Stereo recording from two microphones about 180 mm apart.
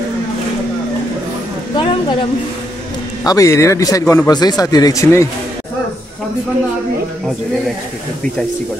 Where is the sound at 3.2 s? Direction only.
20° left (ahead or behind).